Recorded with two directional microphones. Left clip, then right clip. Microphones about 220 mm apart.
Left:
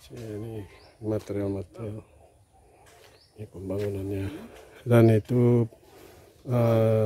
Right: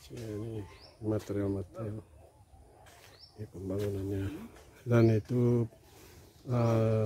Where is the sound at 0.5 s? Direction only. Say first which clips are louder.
Left 3 dB; 15° left (ahead or behind).